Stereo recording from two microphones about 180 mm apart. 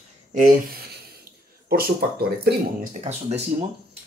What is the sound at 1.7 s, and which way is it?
Speech, 60° right (ahead or behind).